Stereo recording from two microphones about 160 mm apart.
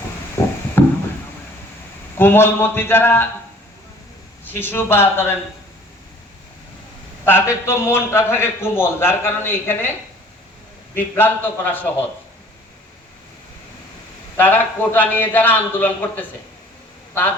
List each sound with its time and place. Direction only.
0.4 s a sound: 15° left (ahead or behind)
2.1 s a man's voice: 15° left (ahead or behind)
4.4 s a man's voice: 15° left (ahead or behind)
7.3 s a man's voice: 15° left (ahead or behind)
10.9 s a man's voice: 10° left (ahead or behind)
14.3 s a man's voice: 10° left (ahead or behind)